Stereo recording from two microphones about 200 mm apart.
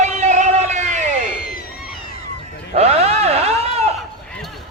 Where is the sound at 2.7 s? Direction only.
30° right (ahead or behind).